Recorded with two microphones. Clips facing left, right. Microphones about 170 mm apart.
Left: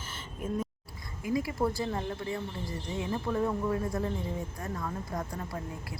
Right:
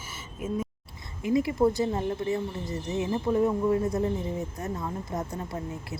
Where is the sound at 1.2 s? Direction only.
25° right (ahead or behind).